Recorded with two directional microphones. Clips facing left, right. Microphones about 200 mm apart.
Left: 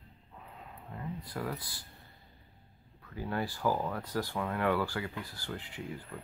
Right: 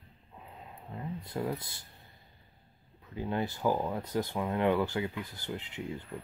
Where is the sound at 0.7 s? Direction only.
25° right (ahead or behind).